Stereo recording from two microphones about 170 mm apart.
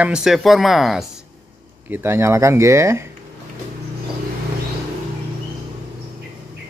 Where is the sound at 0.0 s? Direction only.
5° right (ahead or behind).